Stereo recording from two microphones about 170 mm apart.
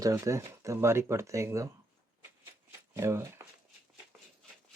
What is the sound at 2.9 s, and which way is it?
Speech, 15° right (ahead or behind).